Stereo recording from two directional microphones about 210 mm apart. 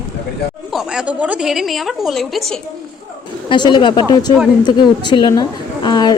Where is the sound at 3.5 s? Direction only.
20° left (ahead or behind).